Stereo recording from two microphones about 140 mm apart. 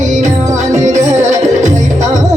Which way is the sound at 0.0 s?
60° right (ahead or behind).